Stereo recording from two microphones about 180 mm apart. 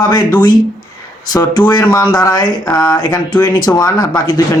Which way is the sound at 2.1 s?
20° left (ahead or behind).